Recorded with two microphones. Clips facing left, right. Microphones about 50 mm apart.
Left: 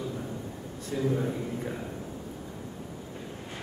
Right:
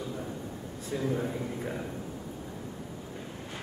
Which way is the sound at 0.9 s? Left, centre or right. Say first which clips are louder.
Left 2 dB; centre.